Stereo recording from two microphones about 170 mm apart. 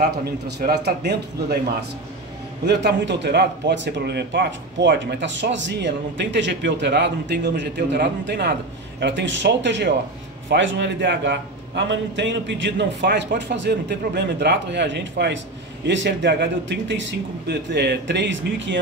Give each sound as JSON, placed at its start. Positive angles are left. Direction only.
{"t": 0.2, "sound": "a man's voice", "side_deg": -70}
{"t": 2.6, "sound": "a man's voice", "side_deg": -85}